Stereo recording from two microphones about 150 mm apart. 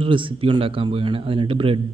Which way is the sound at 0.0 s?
35° right (ahead or behind).